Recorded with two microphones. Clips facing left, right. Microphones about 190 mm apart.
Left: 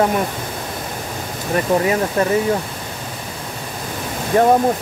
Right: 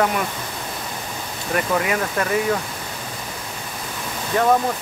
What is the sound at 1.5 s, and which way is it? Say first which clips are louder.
Speech: left 5 dB; 30° left (ahead or behind).